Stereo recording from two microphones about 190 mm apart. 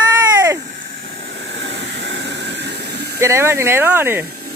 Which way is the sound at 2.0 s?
65° right (ahead or behind).